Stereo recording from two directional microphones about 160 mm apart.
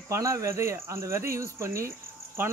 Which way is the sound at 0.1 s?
20° right (ahead or behind).